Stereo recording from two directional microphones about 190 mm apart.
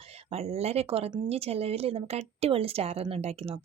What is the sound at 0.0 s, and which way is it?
Speech, 30° right (ahead or behind).